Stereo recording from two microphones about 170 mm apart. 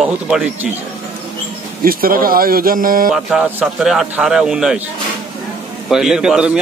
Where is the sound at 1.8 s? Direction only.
60° right (ahead or behind).